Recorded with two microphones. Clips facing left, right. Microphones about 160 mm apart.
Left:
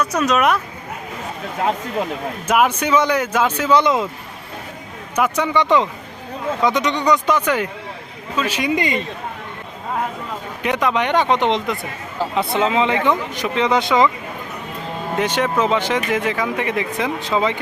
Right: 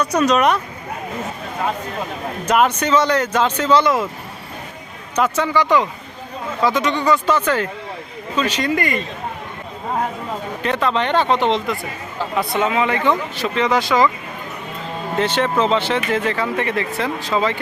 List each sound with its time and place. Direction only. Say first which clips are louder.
0.0 s speech: right 2 dB; 5° left (ahead or behind)
2.5 s speech: even; 10° left (ahead or behind)
5.1 s speech: even; 10° left (ahead or behind)
5.5 s speech: left 1 dB; 25° left (ahead or behind)
10.6 s speech: left 1 dB; 15° left (ahead or behind)
15.2 s speech: right 1 dB; 10° left (ahead or behind)